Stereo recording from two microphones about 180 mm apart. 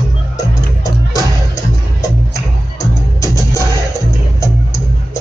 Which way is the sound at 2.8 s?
15° left (ahead or behind).